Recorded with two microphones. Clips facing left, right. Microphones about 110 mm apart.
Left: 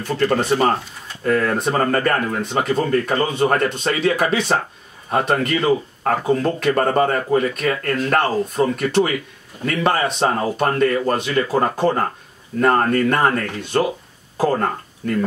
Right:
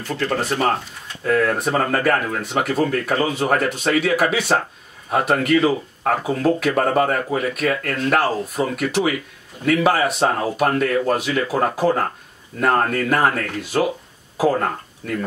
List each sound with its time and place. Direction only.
0.0 s speech: centre (ahead or behind)